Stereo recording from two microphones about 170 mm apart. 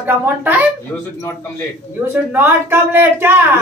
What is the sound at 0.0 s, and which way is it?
Speech, 10° right (ahead or behind).